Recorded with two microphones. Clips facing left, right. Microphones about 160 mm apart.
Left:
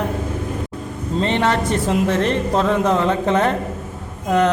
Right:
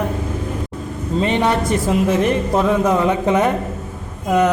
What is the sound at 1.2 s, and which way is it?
A man's voice, 15° right (ahead or behind).